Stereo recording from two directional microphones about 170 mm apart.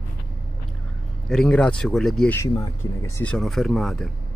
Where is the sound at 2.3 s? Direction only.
20° left (ahead or behind).